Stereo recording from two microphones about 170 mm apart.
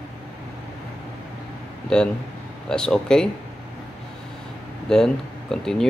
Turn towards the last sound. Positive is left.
turn(degrees=5)  # may be behind; listen again after turning